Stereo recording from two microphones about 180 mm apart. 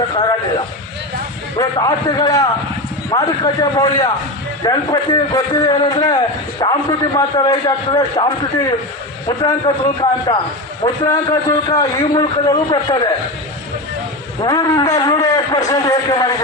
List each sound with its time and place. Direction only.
1.5 s a man's voice: 20° left (ahead or behind)
14.4 s a man's voice: 20° left (ahead or behind)